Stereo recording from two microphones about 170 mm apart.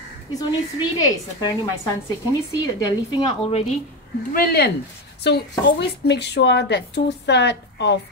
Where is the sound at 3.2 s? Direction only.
35° left (ahead or behind).